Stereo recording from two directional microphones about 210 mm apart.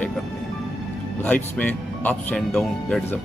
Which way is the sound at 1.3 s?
5° left (ahead or behind).